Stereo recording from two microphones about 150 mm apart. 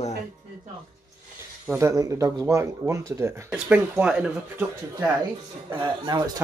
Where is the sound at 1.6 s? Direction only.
10° right (ahead or behind).